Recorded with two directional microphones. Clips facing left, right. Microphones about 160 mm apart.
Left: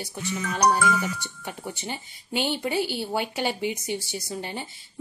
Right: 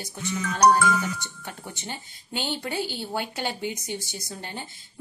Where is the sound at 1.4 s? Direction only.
10° left (ahead or behind).